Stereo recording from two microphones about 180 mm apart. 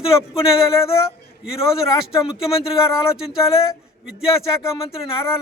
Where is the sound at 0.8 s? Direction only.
15° left (ahead or behind).